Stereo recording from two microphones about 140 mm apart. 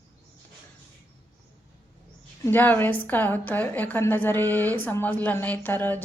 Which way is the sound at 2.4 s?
15° left (ahead or behind).